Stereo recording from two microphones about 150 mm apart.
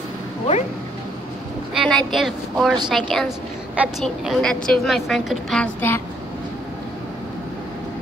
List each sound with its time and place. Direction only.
1.7 s a sound: centre (ahead or behind)
2.1 s a woman's voice: centre (ahead or behind)
5.8 s speech: 15° left (ahead or behind)